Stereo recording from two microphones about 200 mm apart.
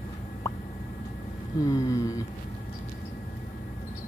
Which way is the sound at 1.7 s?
15° left (ahead or behind).